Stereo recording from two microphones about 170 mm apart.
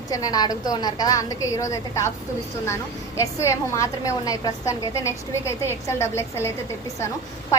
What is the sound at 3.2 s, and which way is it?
A woman's voice, 15° left (ahead or behind).